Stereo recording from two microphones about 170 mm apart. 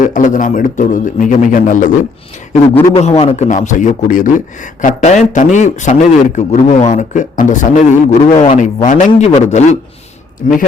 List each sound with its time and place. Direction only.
0.0 s a man's voice: 50° left (ahead or behind)
2.9 s a man's voice: 35° left (ahead or behind)